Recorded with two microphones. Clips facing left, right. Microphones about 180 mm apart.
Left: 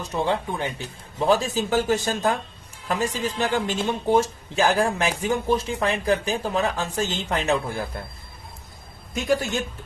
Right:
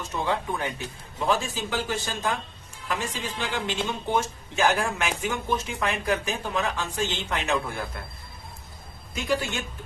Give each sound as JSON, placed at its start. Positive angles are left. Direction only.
{"t": 0.3, "sound": "speech", "side_deg": 25}
{"t": 1.2, "sound": "speech", "side_deg": 35}
{"t": 3.8, "sound": "speech", "side_deg": 35}
{"t": 9.1, "sound": "speech", "side_deg": 40}